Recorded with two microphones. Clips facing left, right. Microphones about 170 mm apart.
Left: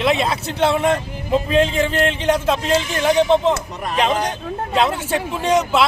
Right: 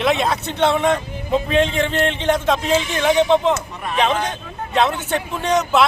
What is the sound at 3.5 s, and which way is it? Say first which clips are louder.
Speech: even; 35° left (ahead or behind).